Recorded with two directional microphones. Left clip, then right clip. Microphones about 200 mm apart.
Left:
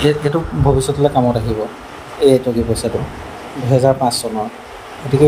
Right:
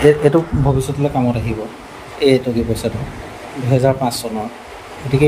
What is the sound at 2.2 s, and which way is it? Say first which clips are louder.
Speech: left 2 dB; centre (ahead or behind).